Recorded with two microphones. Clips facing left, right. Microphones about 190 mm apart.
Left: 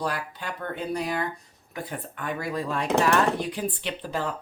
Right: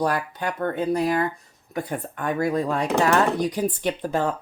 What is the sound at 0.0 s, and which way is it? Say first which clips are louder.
Speech: right 7 dB; 50° right (ahead or behind).